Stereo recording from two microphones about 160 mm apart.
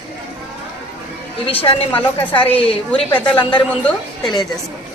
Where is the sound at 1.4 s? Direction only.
35° left (ahead or behind).